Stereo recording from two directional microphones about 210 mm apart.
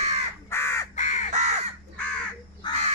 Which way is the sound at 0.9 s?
35° left (ahead or behind).